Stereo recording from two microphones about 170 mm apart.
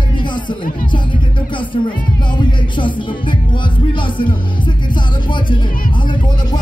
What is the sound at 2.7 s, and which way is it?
Music, 30° left (ahead or behind).